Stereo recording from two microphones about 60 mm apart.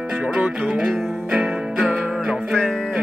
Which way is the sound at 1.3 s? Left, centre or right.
Centre.